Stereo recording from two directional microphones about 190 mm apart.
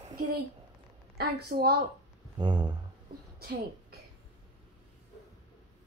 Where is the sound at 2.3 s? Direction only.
25° right (ahead or behind).